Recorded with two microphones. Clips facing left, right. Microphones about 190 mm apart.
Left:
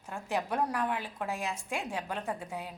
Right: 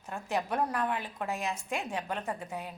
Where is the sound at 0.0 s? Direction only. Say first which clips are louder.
Right 1 dB; 15° left (ahead or behind).